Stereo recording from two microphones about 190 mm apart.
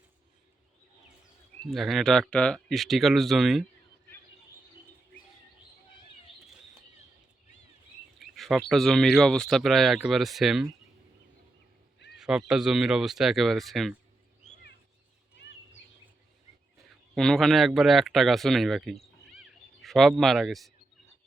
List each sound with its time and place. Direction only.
1.7 s speech: centre (ahead or behind)
8.2 s a sound: centre (ahead or behind)
8.7 s speech: centre (ahead or behind)
12.1 s speech: 5° right (ahead or behind)
17.2 s speech: centre (ahead or behind)
19.4 s cat: centre (ahead or behind)